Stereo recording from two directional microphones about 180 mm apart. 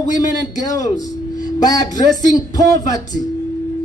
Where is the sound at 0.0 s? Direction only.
45° left (ahead or behind).